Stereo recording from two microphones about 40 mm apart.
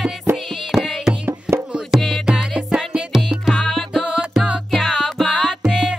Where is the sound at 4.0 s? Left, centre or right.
Right.